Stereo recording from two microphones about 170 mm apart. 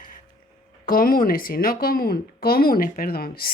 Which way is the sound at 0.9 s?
55° left (ahead or behind).